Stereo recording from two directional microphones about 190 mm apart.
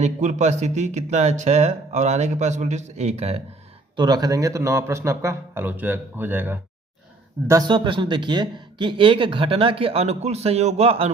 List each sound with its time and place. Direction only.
0.0 s speech: 40° right (ahead or behind)
3.9 s speech: 20° right (ahead or behind)
7.4 s speech: 20° right (ahead or behind)